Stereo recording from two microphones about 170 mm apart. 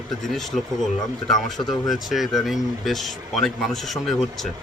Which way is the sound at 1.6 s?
25° left (ahead or behind).